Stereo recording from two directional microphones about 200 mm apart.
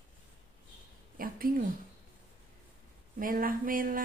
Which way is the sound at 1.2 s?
45° right (ahead or behind).